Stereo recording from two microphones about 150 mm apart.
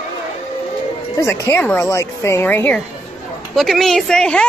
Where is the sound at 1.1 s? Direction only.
20° left (ahead or behind).